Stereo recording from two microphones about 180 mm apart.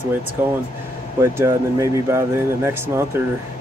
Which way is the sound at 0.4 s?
10° right (ahead or behind).